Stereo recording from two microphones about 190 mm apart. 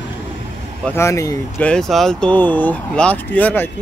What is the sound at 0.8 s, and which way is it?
Speech, 15° left (ahead or behind).